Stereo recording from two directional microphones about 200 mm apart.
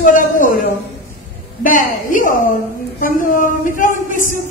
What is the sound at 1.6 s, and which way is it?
A woman's voice, 40° left (ahead or behind).